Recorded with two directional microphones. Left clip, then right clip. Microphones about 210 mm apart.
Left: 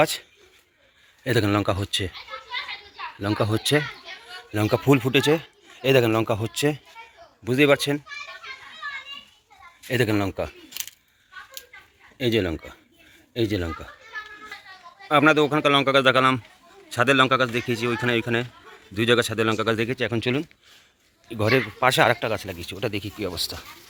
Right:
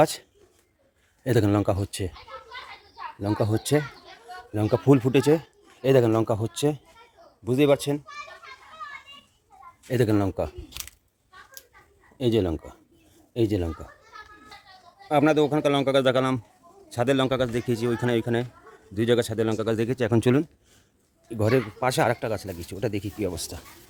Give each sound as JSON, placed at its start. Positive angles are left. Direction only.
{"t": 0.0, "sound": "speech", "side_deg": -20}
{"t": 3.2, "sound": "speech", "side_deg": -10}
{"t": 9.9, "sound": "speech", "side_deg": -20}
{"t": 12.1, "sound": "speech", "side_deg": -15}
{"t": 15.1, "sound": "speech", "side_deg": -5}
{"t": 20.0, "sound": "speech", "side_deg": -35}
{"t": 21.2, "sound": "speech", "side_deg": -15}